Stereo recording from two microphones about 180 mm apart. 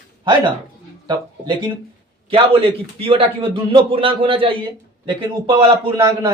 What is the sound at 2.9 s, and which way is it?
A man's voice, 30° right (ahead or behind).